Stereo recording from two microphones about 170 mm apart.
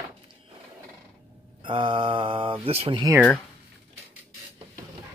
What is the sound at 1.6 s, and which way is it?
Mantra, 30° right (ahead or behind).